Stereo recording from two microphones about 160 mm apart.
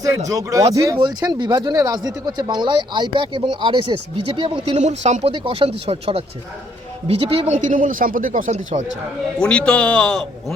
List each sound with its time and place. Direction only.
0.3 s speech: 20° right (ahead or behind)
4.8 s speech: 45° right (ahead or behind)
9.4 s a man's voice: 5° left (ahead or behind)